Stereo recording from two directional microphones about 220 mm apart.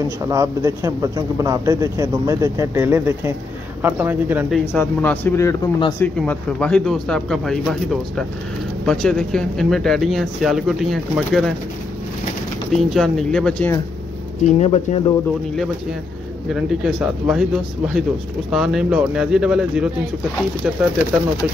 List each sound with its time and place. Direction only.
0.3 s a man's voice: 15° right (ahead or behind)
4.7 s speech: 10° left (ahead or behind)
5.9 s speech: 5° left (ahead or behind)
12.7 s speech: centre (ahead or behind)
14.6 s speech: 30° left (ahead or behind)
16.5 s speech: 5° right (ahead or behind)